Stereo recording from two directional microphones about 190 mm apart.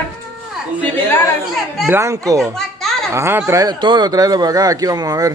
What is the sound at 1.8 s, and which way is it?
Speech, 15° right (ahead or behind).